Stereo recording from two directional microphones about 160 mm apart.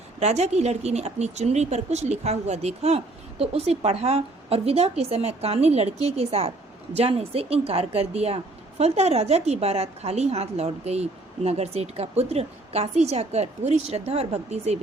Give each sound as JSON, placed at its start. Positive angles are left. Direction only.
{"t": 0.2, "sound": "speech", "side_deg": -45}